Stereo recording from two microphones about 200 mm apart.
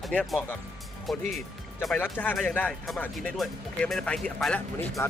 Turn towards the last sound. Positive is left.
turn(degrees=10)  # may be behind; listen again after turning